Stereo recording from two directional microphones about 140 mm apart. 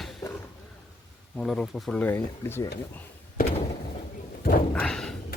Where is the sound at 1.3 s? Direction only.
5° left (ahead or behind).